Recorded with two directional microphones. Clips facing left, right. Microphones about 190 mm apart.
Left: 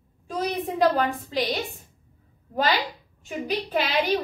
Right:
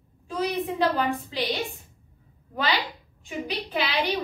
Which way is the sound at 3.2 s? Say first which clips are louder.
Left 3 dB; 45° left (ahead or behind).